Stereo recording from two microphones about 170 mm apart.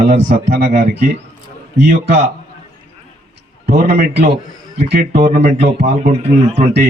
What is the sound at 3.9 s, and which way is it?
A man's voice, 40° right (ahead or behind).